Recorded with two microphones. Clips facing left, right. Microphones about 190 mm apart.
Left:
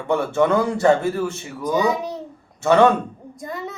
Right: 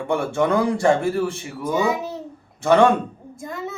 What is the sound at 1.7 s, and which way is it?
Speech, 5° right (ahead or behind).